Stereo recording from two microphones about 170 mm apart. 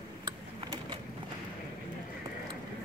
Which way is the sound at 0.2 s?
20° right (ahead or behind).